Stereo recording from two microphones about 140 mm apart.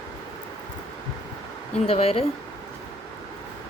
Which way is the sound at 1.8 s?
45° left (ahead or behind).